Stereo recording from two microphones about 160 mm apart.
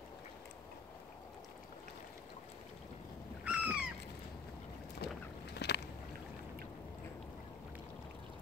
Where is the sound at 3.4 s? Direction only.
5° right (ahead or behind).